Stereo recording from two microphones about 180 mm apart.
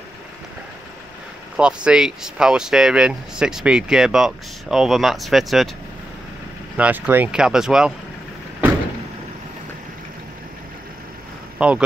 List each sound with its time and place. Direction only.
1.6 s speech: 5° right (ahead or behind)
6.8 s speech: 10° right (ahead or behind)
11.5 s vehicle: 5° right (ahead or behind)